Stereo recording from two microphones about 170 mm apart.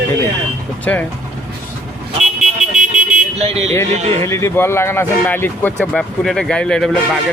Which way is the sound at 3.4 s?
40° right (ahead or behind).